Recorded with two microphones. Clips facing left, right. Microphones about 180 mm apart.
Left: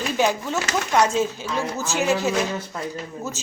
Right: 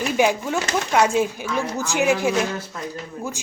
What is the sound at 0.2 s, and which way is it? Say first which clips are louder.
Speech: right 2 dB; 15° right (ahead or behind).